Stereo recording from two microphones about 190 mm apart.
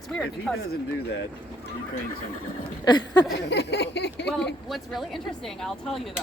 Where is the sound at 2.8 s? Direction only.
25° left (ahead or behind).